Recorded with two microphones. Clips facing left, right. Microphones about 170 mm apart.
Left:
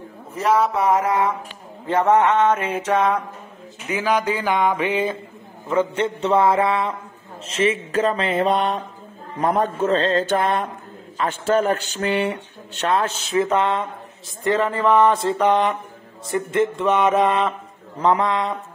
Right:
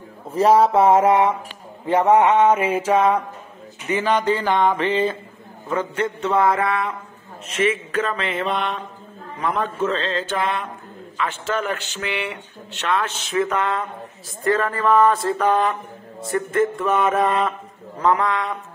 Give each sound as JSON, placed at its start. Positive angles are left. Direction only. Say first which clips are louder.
{"t": 0.3, "sound": "a sound", "louder": "right 4 dB", "side_deg": -30}
{"t": 1.9, "sound": "mantra", "louder": "right 1 dB", "side_deg": -15}
{"t": 3.9, "sound": "a sound", "louder": "right 1 dB", "side_deg": 5}
{"t": 5.8, "sound": "speech", "louder": "left 4 dB", "side_deg": 25}
{"t": 9.4, "sound": "music", "louder": "left 3 dB", "side_deg": 40}
{"t": 11.1, "sound": "speech", "louder": "left 5 dB", "side_deg": 40}